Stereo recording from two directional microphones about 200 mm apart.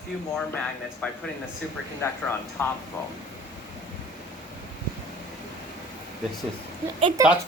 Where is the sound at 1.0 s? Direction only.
5° left (ahead or behind).